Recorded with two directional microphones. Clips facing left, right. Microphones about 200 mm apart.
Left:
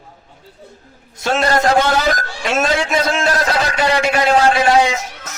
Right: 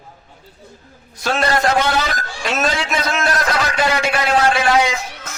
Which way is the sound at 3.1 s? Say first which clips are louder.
Left 2 dB; 30° left (ahead or behind).